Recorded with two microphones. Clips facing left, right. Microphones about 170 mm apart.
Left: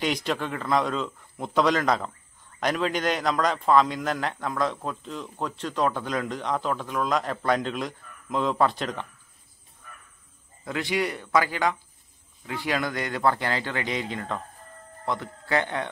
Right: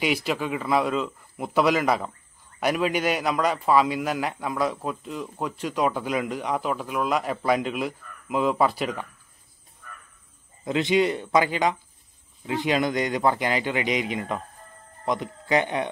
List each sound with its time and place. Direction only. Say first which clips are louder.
0.0 s a man's voice: right 2 dB; 5° right (ahead or behind)
10.6 s a man's voice: right 6 dB; 20° right (ahead or behind)